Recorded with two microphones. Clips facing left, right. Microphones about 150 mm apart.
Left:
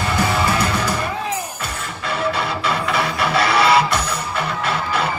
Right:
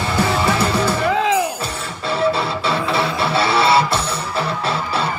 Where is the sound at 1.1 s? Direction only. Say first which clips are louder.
Right 8 dB; 90° right.